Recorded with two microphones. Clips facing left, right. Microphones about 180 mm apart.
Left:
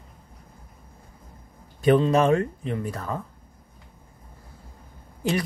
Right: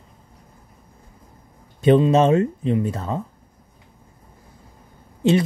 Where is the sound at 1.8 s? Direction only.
25° right (ahead or behind).